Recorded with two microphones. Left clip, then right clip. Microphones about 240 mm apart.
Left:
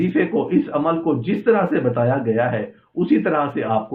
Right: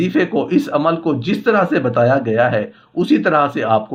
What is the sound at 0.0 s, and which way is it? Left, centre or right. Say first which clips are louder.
Speech: right 3 dB; right.